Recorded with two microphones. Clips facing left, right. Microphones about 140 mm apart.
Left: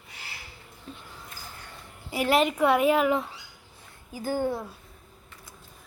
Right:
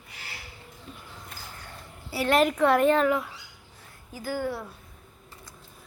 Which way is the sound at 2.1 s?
15° left (ahead or behind).